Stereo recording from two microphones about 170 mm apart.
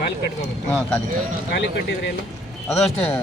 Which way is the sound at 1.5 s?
90° left.